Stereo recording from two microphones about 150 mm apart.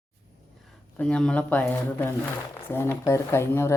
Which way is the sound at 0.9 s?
5° left (ahead or behind).